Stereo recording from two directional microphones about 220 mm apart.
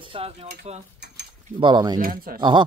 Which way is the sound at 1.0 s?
50° right (ahead or behind).